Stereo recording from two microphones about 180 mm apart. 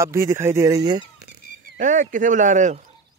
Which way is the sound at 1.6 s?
45° right (ahead or behind).